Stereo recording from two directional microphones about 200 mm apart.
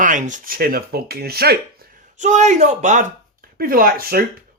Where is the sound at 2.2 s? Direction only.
35° right (ahead or behind).